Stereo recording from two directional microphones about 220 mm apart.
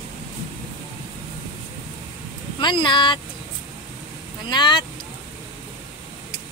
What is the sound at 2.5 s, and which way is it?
Speech, 20° left (ahead or behind).